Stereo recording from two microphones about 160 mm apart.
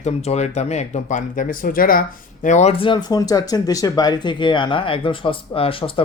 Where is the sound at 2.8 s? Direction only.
30° left (ahead or behind).